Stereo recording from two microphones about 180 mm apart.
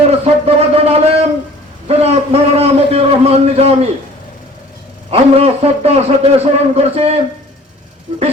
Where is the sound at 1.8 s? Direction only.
35° right (ahead or behind).